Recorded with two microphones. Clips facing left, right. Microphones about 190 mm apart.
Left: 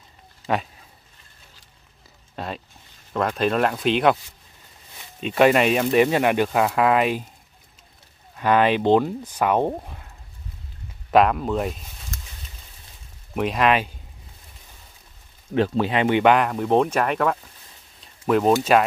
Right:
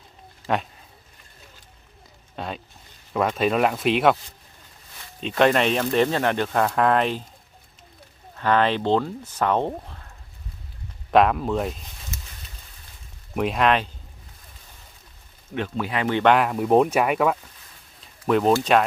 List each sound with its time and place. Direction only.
0.5 s speech: centre (ahead or behind)
2.3 s speech: centre (ahead or behind)
5.2 s speech: 5° left (ahead or behind)
8.4 s speech: 10° left (ahead or behind)
11.1 s speech: centre (ahead or behind)
13.3 s speech: centre (ahead or behind)
15.5 s speech: 35° left (ahead or behind)
16.3 s speech: centre (ahead or behind)
18.0 s a sound: 5° left (ahead or behind)
18.7 s speech: 5° left (ahead or behind)